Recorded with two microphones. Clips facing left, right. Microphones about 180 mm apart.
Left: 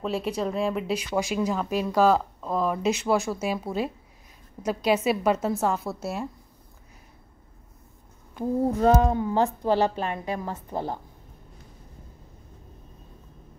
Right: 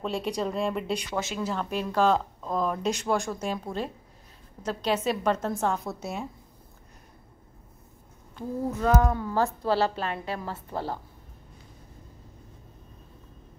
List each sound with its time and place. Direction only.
0.0 s a woman's voice: 5° left (ahead or behind)
8.7 s a woman's voice: 25° left (ahead or behind)